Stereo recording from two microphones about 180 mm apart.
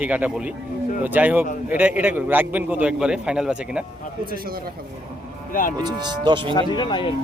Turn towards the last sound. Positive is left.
turn(degrees=25)  # may be behind; listen again after turning